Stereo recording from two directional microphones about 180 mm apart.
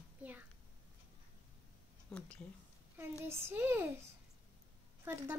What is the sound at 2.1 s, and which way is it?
Speech, 5° left (ahead or behind).